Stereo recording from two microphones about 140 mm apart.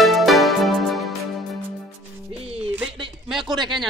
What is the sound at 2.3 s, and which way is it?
Music, 45° right (ahead or behind).